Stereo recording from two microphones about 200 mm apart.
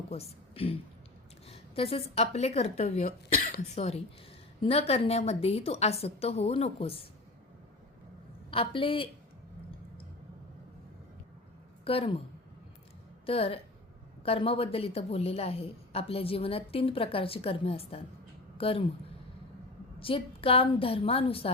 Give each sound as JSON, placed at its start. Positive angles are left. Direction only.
{"t": 0.1, "sound": "a woman's voice", "side_deg": 30}
{"t": 8.4, "sound": "a woman's voice", "side_deg": 25}
{"t": 11.9, "sound": "a woman's voice", "side_deg": 30}
{"t": 13.2, "sound": "a woman's voice", "side_deg": 30}
{"t": 20.0, "sound": "a woman's voice", "side_deg": 25}